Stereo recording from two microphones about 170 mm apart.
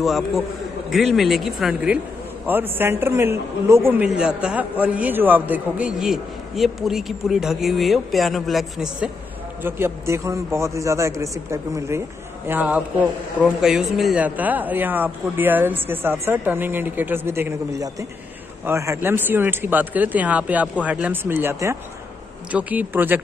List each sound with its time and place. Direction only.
0.0 s speech: centre (ahead or behind)
9.6 s speech: 15° right (ahead or behind)